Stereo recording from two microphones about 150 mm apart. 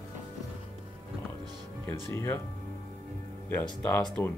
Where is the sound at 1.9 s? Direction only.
15° left (ahead or behind).